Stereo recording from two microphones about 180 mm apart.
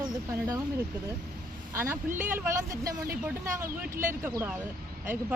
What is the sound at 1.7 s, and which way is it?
Speech, 15° right (ahead or behind).